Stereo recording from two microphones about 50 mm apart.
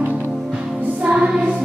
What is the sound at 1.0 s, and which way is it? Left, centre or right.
Music, right.